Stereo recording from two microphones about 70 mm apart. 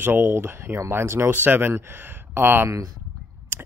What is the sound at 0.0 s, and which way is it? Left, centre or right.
Speech, right.